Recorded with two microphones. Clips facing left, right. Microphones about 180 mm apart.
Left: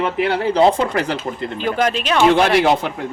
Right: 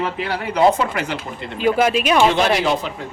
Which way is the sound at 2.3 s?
60° left (ahead or behind).